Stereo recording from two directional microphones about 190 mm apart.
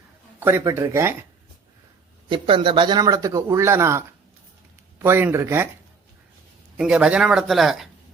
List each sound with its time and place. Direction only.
0.3 s speech: 10° right (ahead or behind)
2.3 s speech: 25° right (ahead or behind)
5.0 s speech: 15° right (ahead or behind)
6.7 s speech: 5° right (ahead or behind)